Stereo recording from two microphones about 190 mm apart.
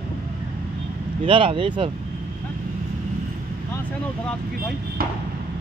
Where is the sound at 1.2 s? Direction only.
25° right (ahead or behind).